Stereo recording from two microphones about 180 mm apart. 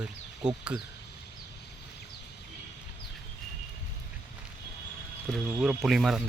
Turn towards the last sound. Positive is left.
turn(degrees=0)  # may be behind; listen again after turning